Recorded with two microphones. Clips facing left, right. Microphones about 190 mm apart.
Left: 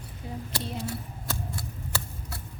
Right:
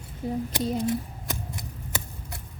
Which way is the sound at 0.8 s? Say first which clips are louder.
Right 8 dB; 15° right (ahead or behind).